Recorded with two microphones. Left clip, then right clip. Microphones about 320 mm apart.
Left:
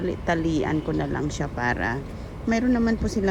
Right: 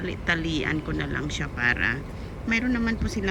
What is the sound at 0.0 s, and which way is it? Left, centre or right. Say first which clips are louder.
Speech: left 2 dB; centre.